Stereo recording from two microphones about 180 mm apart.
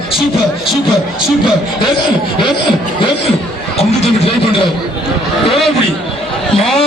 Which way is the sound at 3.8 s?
35° left (ahead or behind).